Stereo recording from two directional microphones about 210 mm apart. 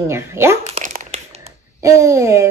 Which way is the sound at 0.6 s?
35° right (ahead or behind).